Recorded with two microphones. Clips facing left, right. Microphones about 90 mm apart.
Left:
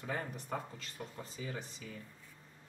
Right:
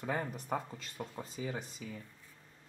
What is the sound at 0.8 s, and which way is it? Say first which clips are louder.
Speech: right 3 dB; 35° right (ahead or behind).